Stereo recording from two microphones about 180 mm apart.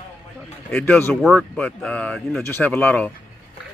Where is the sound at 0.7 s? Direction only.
10° left (ahead or behind).